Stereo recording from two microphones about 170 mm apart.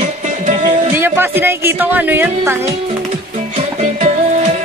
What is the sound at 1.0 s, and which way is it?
A woman's voice, 15° right (ahead or behind).